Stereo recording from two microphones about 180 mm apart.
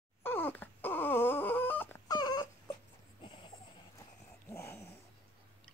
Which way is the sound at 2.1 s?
20° left (ahead or behind).